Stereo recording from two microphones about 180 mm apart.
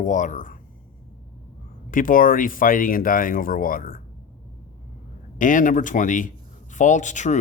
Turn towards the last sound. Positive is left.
turn(degrees=40)  # may be behind; listen again after turning